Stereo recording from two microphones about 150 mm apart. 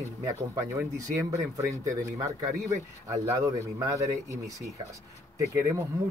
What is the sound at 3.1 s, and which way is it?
A man's voice, 20° right (ahead or behind).